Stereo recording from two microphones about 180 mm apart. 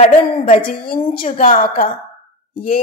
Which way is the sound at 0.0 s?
35° left (ahead or behind).